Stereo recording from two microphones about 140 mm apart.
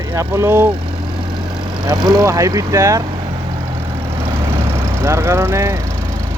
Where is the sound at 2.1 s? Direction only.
25° right (ahead or behind).